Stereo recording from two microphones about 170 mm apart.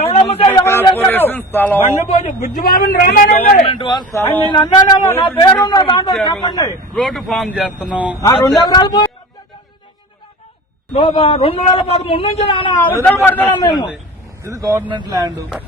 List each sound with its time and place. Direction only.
0.0 s a sound: 35° left (ahead or behind)
0.4 s a sound: 20° left (ahead or behind)
0.9 s speech: 10° left (ahead or behind)
2.0 s a man's voice: 45° left (ahead or behind)
2.6 s speech: 60° left (ahead or behind)
3.3 s speech: 35° left (ahead or behind)
4.2 s speech: 10° left (ahead or behind)
4.5 s speech: 25° left (ahead or behind)
6.9 s speech: centre (ahead or behind)
8.3 s speech: 20° left (ahead or behind)
10.9 s a man's voice: 35° left (ahead or behind)
12.8 s speech: 10° left (ahead or behind)
13.7 s speech: 25° left (ahead or behind)
14.5 s speech: 20° right (ahead or behind)